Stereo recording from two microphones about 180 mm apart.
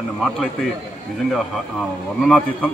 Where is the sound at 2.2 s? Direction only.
5° left (ahead or behind).